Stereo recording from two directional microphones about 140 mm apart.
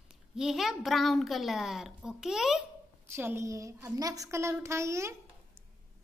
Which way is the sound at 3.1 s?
15° right (ahead or behind).